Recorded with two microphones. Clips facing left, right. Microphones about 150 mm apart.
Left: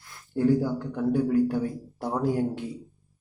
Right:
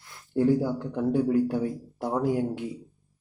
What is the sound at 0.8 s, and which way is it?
A man's voice, 25° right (ahead or behind).